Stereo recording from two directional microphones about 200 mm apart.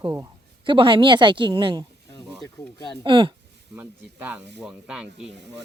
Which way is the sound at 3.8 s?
10° right (ahead or behind).